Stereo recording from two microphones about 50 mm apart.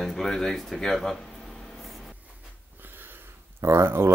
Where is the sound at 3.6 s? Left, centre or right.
Right.